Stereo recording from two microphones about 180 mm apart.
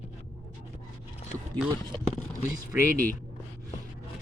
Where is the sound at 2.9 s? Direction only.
50° right (ahead or behind).